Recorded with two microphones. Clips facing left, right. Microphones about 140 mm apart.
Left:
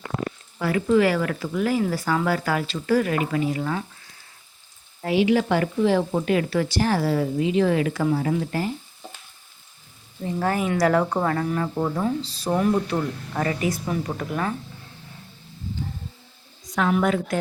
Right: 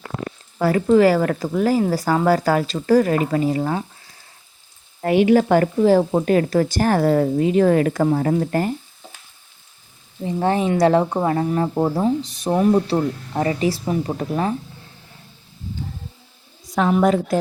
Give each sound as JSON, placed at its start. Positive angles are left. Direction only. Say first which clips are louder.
{"t": 0.6, "sound": "speech", "louder": "right 5 dB", "side_deg": -40}
{"t": 5.0, "sound": "speech", "louder": "right 5 dB", "side_deg": -50}
{"t": 10.2, "sound": "speech", "louder": "right 4 dB", "side_deg": -20}
{"t": 12.2, "sound": "speech", "louder": "right 4 dB", "side_deg": -20}
{"t": 16.7, "sound": "speech", "louder": "right 4 dB", "side_deg": -30}